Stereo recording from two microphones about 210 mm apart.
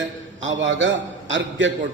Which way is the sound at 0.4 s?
65° right (ahead or behind).